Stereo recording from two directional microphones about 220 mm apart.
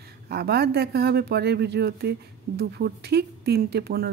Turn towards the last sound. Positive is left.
turn(degrees=-45)  # may be behind; listen again after turning